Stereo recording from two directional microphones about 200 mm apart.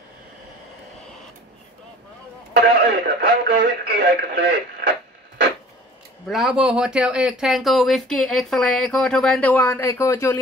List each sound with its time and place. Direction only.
2.5 s speech: 50° right (ahead or behind)
6.2 s speech: centre (ahead or behind)